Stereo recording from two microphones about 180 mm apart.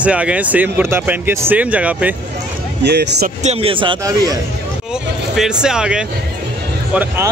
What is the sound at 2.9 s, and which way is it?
Speech, 65° right (ahead or behind).